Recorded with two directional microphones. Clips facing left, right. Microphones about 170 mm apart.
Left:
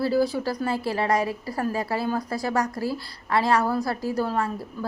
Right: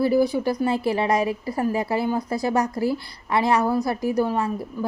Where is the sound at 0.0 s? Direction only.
20° right (ahead or behind).